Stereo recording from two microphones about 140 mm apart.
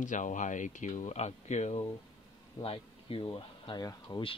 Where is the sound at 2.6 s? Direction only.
40° left (ahead or behind).